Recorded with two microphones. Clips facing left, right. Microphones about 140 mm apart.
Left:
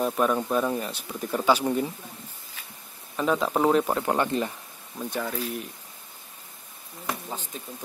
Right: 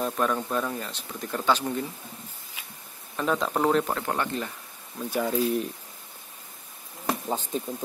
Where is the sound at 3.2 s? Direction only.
5° left (ahead or behind).